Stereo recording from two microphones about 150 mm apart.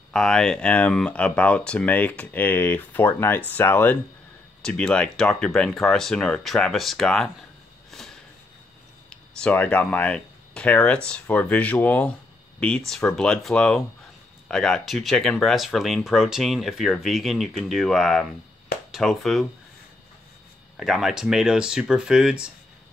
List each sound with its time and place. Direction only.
0.1 s speech: 5° left (ahead or behind)
7.9 s a sound: 5° left (ahead or behind)
9.1 s speech: 10° left (ahead or behind)
20.7 s speech: centre (ahead or behind)